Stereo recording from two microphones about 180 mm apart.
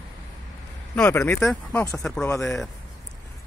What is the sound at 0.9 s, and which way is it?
Speech, 10° left (ahead or behind).